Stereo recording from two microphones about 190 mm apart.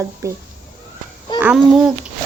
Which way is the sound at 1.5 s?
Centre (ahead or behind).